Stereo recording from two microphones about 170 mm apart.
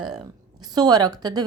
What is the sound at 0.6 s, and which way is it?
Speech, 25° right (ahead or behind).